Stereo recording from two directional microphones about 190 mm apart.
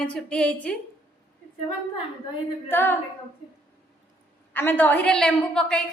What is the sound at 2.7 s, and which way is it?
Speech, 10° left (ahead or behind).